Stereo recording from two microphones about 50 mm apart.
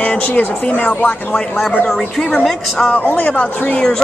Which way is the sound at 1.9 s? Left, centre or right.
Centre.